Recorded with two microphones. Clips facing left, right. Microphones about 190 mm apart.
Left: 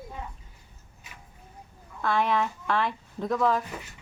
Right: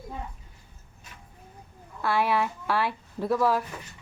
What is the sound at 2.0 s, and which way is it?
Speech, 10° right (ahead or behind).